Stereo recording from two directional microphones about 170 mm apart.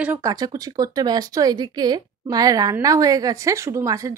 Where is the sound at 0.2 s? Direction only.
20° right (ahead or behind).